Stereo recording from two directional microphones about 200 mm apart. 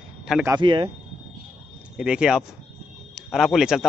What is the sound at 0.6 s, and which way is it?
Speech, 20° right (ahead or behind).